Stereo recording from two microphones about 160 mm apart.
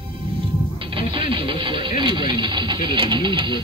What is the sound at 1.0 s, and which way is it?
Speech, 30° right (ahead or behind).